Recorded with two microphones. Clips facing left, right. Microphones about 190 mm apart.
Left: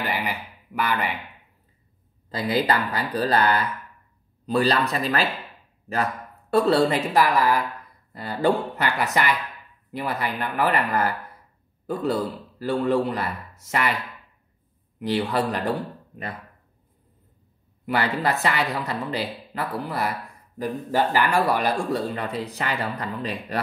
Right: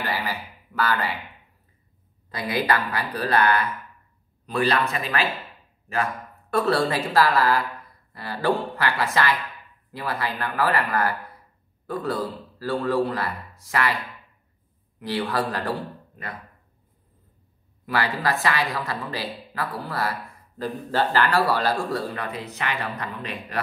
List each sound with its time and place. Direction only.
0.0 s a sound: 20° left (ahead or behind)
2.3 s speech: 25° left (ahead or behind)
6.5 s a man's voice: 25° left (ahead or behind)
15.0 s speech: 20° left (ahead or behind)
17.8 s speech: 25° left (ahead or behind)